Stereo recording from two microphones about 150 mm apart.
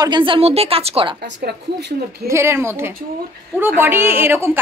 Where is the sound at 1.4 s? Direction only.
90° right.